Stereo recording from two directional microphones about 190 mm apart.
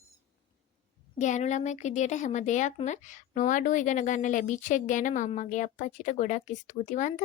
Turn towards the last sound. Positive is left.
turn(degrees=40)  # may be behind; listen again after turning